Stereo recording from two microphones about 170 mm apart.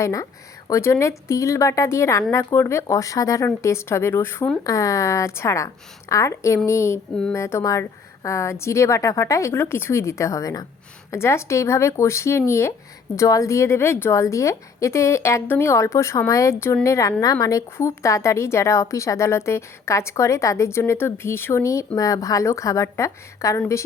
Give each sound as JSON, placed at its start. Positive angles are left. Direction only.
{"t": 0.0, "sound": "a woman's voice", "side_deg": 20}